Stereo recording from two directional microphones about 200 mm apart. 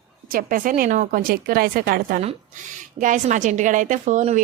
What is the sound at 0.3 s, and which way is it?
A woman's voice, 45° right (ahead or behind).